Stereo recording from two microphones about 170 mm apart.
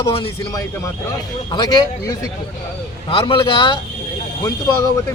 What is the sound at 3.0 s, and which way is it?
Speech, 30° left (ahead or behind).